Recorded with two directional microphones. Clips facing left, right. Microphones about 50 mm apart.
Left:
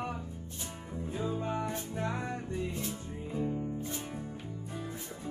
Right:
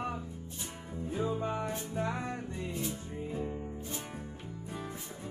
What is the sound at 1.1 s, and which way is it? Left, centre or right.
Music, centre.